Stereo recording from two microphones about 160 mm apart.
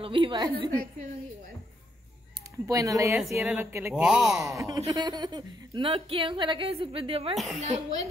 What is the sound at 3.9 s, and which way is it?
Speech, 5° right (ahead or behind).